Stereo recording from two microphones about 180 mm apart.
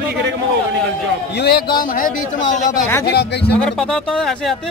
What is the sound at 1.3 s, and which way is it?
Speech, 60° left (ahead or behind).